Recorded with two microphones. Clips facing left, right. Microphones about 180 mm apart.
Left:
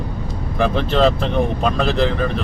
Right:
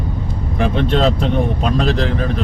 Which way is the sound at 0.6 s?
Centre (ahead or behind).